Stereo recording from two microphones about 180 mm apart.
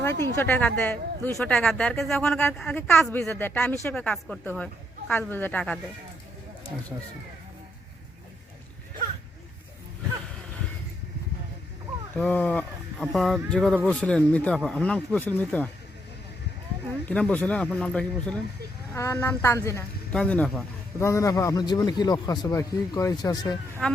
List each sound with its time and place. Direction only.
0.0 s a woman's voice: 10° left (ahead or behind)
12.1 s a woman's voice: 10° left (ahead or behind)
17.1 s a woman's voice: 10° left (ahead or behind)
18.9 s a woman's voice: 15° left (ahead or behind)
20.1 s speech: 5° left (ahead or behind)
21.0 s a man's voice: 15° left (ahead or behind)
23.8 s speech: 5° left (ahead or behind)